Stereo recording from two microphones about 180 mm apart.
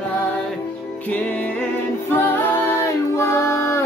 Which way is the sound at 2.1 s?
10° left (ahead or behind).